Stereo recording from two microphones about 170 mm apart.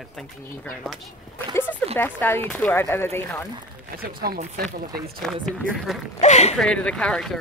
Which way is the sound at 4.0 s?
60° right (ahead or behind).